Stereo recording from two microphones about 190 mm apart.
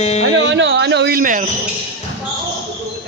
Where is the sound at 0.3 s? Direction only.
70° right (ahead or behind); by 1.5 s 45° right (ahead or behind).